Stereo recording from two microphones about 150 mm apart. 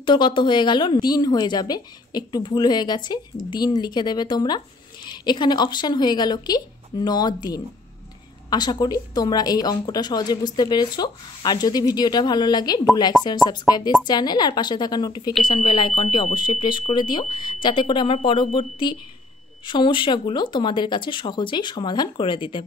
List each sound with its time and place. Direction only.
0.0 s a woman's voice: 30° left (ahead or behind)